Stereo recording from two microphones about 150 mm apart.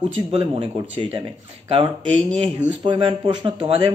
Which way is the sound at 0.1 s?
40° right (ahead or behind).